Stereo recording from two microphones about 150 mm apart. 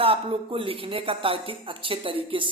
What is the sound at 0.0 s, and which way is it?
Speech, 35° right (ahead or behind).